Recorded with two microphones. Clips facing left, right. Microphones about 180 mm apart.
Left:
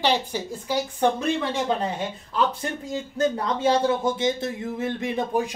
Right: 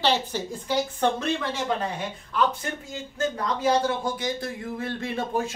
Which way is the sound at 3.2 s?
20° left (ahead or behind).